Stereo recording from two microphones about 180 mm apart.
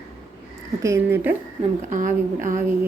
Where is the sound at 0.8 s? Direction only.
15° right (ahead or behind).